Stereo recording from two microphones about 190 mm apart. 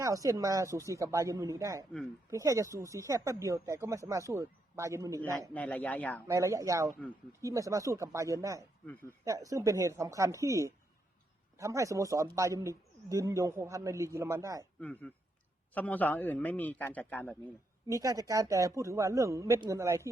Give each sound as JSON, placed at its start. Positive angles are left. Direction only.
{"t": 0.0, "sound": "speech", "side_deg": -20}
{"t": 5.5, "sound": "a man's voice", "side_deg": 5}
{"t": 6.2, "sound": "speech", "side_deg": -15}
{"t": 14.8, "sound": "a man's voice", "side_deg": 5}
{"t": 17.8, "sound": "speech", "side_deg": -15}